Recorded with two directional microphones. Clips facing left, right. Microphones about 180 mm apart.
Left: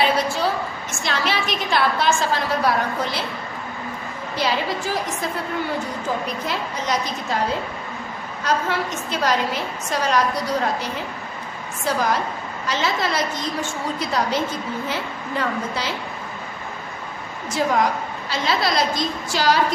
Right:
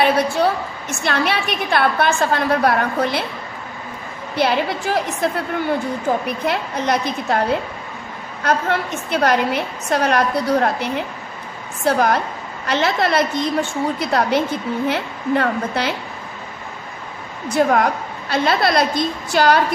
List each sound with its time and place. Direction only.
0.0 s a woman's voice: 60° right (ahead or behind)
4.4 s a woman's voice: 60° right (ahead or behind)
8.5 s a woman's voice: 60° right (ahead or behind)
17.5 s a woman's voice: 55° right (ahead or behind)